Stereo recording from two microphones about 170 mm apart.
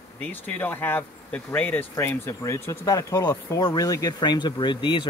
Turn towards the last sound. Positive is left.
turn(degrees=25)  # may be behind; listen again after turning